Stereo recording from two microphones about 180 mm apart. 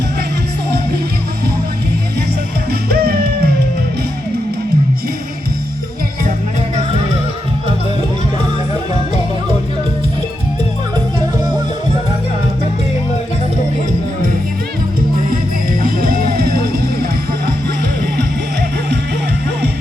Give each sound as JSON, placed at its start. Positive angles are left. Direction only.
{"t": 2.9, "sound": "music", "side_deg": -60}
{"t": 15.8, "sound": "music", "side_deg": -50}